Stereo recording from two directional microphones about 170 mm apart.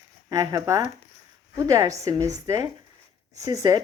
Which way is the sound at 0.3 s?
20° right (ahead or behind).